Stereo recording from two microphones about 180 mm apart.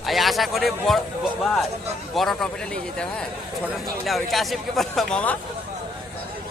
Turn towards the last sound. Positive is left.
turn(degrees=5)  # may be behind; listen again after turning